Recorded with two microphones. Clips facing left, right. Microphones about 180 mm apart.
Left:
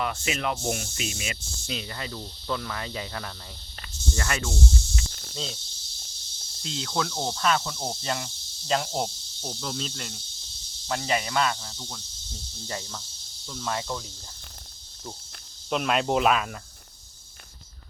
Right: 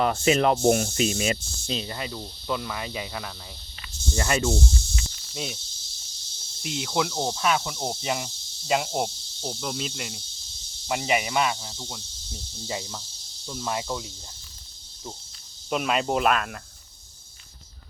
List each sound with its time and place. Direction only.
0.0 s speech: 35° right (ahead or behind)
2.0 s speech: 15° right (ahead or behind)
4.1 s speech: 25° right (ahead or behind)
6.6 s speech: 15° right (ahead or behind)
15.7 s speech: centre (ahead or behind)